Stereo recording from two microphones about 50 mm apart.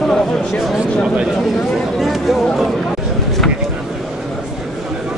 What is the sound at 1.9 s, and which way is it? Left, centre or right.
Chatter, centre.